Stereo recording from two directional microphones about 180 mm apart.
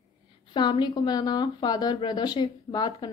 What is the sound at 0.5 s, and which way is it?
A woman's voice, 25° left (ahead or behind).